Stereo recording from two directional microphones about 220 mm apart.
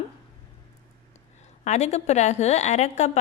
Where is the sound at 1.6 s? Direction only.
30° left (ahead or behind).